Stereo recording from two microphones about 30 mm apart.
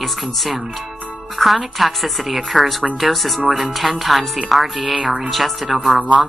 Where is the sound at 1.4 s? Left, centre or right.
Centre.